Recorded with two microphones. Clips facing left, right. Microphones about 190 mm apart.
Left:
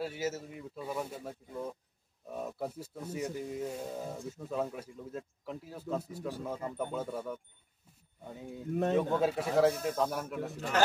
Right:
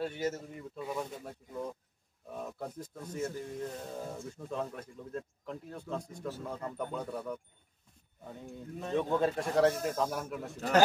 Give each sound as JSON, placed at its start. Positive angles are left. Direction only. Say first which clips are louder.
{"t": 0.0, "sound": "speech", "louder": "right 1 dB", "side_deg": 5}
{"t": 8.4, "sound": "speech", "louder": "left 10 dB", "side_deg": 5}